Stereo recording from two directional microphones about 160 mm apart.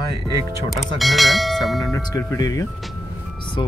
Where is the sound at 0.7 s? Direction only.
Centre (ahead or behind).